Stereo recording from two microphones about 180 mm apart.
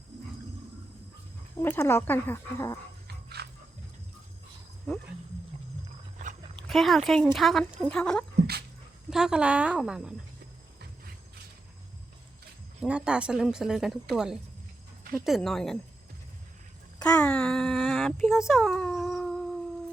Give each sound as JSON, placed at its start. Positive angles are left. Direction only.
{"t": 1.6, "sound": "speech", "side_deg": 10}
{"t": 3.2, "sound": "music", "side_deg": -65}
{"t": 6.7, "sound": "a woman's voice", "side_deg": 0}
{"t": 12.8, "sound": "a woman's voice", "side_deg": -5}
{"t": 17.0, "sound": "speech", "side_deg": 5}